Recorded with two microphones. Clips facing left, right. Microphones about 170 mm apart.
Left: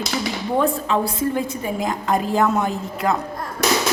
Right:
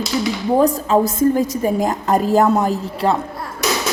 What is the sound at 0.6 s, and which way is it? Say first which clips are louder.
A woman's voice: right 5 dB; 40° right (ahead or behind).